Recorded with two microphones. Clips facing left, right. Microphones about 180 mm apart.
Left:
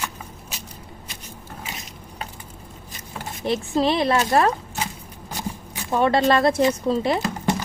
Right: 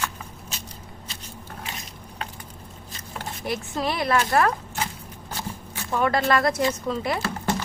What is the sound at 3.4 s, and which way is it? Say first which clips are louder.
Speech: left 7 dB; 25° left (ahead or behind).